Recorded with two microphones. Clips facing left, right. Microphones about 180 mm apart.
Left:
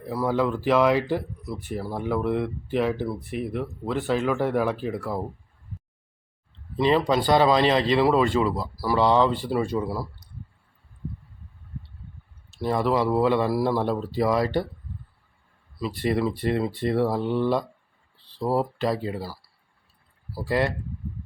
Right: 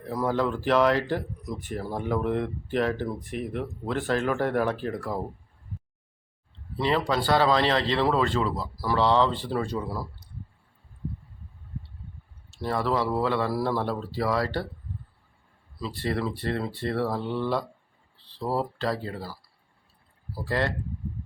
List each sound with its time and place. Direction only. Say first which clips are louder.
0.0 s speech: left 2 dB; 10° left (ahead or behind)
1.5 s speech: left 1 dB; 15° right (ahead or behind)
2.0 s speech: left 2 dB; 5° left (ahead or behind)
6.7 s speech: left 4 dB; 15° left (ahead or behind)
12.5 s speech: left 3 dB; 15° left (ahead or behind)
15.8 s speech: left 4 dB; 15° left (ahead or behind)